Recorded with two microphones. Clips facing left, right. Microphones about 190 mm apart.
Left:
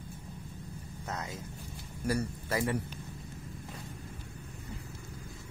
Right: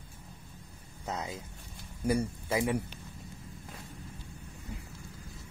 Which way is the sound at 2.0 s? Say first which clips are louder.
Right 3 dB; 15° right (ahead or behind).